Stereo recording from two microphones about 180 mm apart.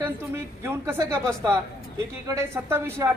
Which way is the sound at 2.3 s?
15° right (ahead or behind).